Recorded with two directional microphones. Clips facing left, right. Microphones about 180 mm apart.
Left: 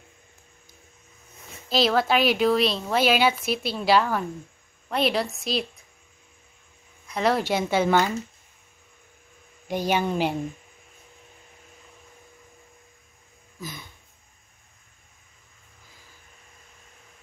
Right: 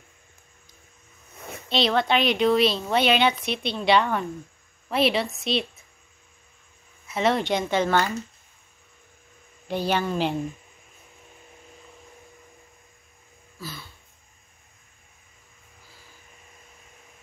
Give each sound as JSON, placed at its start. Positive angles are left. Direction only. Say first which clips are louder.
{"t": 1.7, "sound": "a woman's voice", "louder": "left 1 dB", "side_deg": 0}
{"t": 7.1, "sound": "a woman's voice", "louder": "even", "side_deg": 0}
{"t": 9.7, "sound": "speech", "louder": "left 1 dB", "side_deg": 15}
{"t": 13.6, "sound": "a sound", "louder": "even", "side_deg": 20}